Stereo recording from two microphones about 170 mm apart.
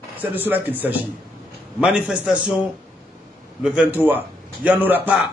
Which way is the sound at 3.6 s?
5° right (ahead or behind).